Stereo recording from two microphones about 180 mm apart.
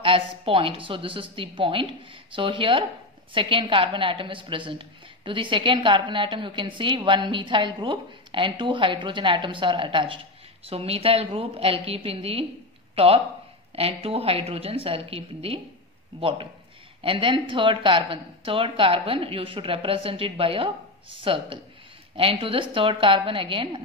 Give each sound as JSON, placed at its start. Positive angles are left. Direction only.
{"t": 0.0, "sound": "a woman's voice", "side_deg": -30}